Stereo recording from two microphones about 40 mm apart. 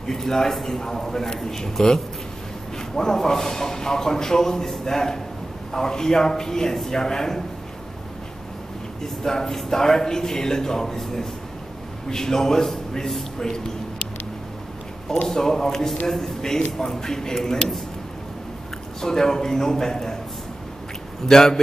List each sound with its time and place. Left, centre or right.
0.1 s speech: centre
3.0 s speech: centre
9.0 s speech: centre
15.2 s speech: centre
18.9 s speech: centre
21.3 s speech: centre